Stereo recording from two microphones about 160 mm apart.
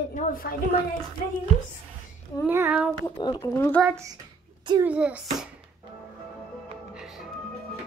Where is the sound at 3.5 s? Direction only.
15° left (ahead or behind).